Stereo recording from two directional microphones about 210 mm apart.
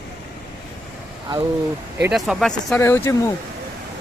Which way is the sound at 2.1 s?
Centre (ahead or behind).